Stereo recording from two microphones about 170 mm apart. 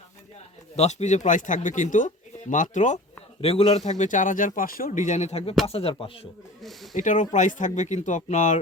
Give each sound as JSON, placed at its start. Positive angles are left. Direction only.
{"t": 0.8, "sound": "a man's voice", "side_deg": 40}
{"t": 3.4, "sound": "a man's voice", "side_deg": 35}
{"t": 6.6, "sound": "speech", "side_deg": 0}
{"t": 6.9, "sound": "a man's voice", "side_deg": 50}